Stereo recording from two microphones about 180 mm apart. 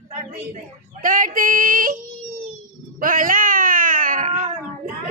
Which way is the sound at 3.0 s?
50° right (ahead or behind).